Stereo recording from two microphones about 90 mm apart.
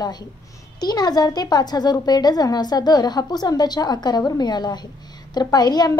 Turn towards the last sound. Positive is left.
turn(degrees=50)  # may be behind; listen again after turning